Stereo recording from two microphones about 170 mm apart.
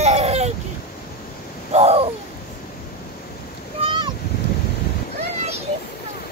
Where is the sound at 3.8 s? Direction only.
30° right (ahead or behind).